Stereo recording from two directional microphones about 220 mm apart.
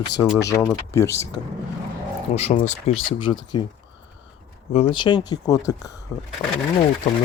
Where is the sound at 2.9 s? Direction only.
65° left (ahead or behind).